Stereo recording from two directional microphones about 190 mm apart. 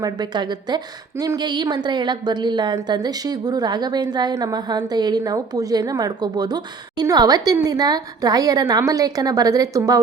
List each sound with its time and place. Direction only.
0.0 s a woman's voice: 20° right (ahead or behind)